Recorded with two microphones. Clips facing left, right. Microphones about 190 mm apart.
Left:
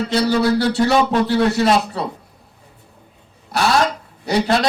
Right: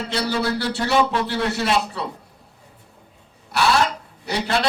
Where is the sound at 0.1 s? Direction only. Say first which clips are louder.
Left 6 dB; 40° left (ahead or behind).